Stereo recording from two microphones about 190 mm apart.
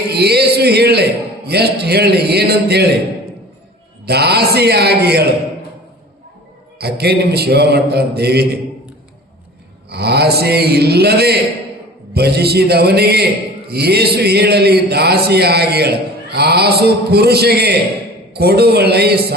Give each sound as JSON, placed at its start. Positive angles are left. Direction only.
{"t": 0.1, "sound": "a man's voice", "side_deg": -60}
{"t": 4.0, "sound": "a man's voice", "side_deg": -55}
{"t": 6.7, "sound": "a man's voice", "side_deg": -60}
{"t": 9.9, "sound": "a man's voice", "side_deg": -60}